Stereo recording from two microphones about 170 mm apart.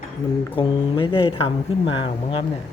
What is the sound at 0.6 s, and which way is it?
Speech, 30° left (ahead or behind).